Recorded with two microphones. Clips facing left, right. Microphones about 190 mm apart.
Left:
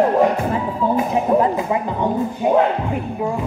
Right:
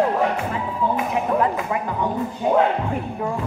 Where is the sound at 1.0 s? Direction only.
30° left (ahead or behind).